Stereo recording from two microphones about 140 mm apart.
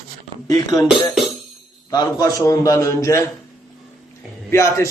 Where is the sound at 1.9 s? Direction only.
25° left (ahead or behind).